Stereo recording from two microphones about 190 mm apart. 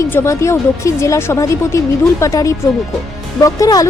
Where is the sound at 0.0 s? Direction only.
15° left (ahead or behind).